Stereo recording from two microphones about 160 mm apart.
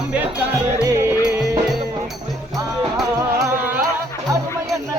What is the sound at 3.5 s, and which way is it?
Music, 10° right (ahead or behind).